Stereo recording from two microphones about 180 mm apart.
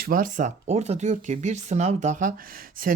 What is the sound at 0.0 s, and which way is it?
Speech, 50° right (ahead or behind).